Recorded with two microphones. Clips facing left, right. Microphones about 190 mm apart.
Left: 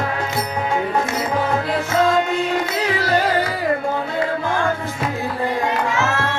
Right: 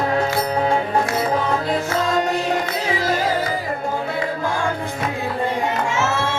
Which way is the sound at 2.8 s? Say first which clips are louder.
Left 2 dB; 70° left (ahead or behind).